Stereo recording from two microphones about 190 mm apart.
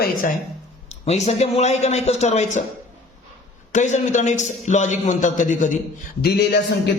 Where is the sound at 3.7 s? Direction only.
40° left (ahead or behind).